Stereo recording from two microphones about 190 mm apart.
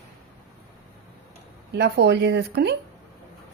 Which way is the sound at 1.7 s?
60° right (ahead or behind).